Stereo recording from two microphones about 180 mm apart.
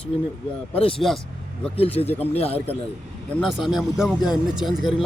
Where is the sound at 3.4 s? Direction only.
Centre (ahead or behind).